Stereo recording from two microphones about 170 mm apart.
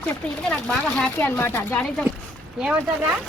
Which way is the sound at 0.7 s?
10° left (ahead or behind).